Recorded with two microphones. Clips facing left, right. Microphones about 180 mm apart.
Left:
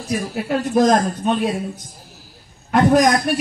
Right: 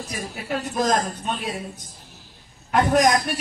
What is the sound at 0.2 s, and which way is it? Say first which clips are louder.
A man's voice: left 7 dB; 60° left (ahead or behind).